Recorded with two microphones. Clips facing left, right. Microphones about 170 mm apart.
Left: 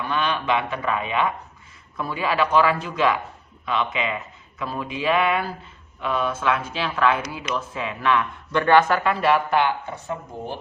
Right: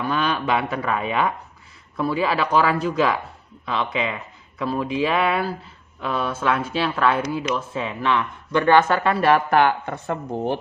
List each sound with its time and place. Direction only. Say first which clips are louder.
0.1 s speech: even; 40° right (ahead or behind); by 9.0 s 20° right (ahead or behind)
9.0 s speech: right 2 dB; 45° right (ahead or behind); by 10.6 s 65° right (ahead or behind)